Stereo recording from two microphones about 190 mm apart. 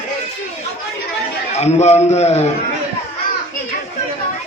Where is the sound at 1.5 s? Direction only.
35° left (ahead or behind).